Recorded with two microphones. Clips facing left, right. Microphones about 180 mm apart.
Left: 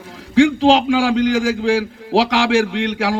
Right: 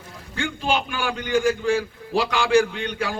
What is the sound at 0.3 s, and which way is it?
A man's voice, 90° left.